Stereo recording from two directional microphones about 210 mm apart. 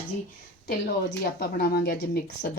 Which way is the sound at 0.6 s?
50° left (ahead or behind).